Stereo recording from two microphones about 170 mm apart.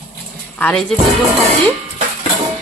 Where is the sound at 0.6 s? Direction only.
10° left (ahead or behind).